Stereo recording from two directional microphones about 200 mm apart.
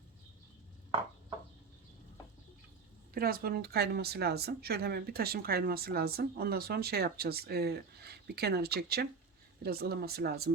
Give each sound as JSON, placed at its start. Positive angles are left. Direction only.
{"t": 3.2, "sound": "speech", "side_deg": -50}